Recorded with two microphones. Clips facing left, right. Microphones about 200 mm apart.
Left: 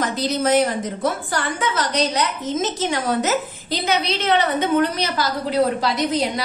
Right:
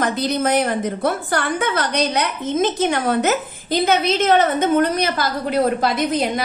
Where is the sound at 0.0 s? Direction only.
55° right (ahead or behind).